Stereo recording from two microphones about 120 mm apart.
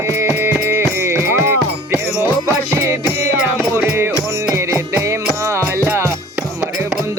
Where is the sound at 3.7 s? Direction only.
20° right (ahead or behind).